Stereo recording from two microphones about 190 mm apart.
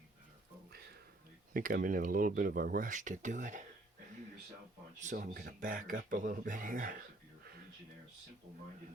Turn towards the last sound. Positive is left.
turn(degrees=-50)  # may be behind; listen again after turning